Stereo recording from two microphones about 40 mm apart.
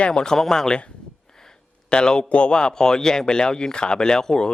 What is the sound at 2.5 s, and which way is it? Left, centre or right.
Speech, centre.